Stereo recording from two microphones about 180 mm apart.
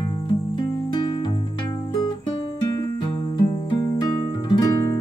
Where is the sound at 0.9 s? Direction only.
25° left (ahead or behind).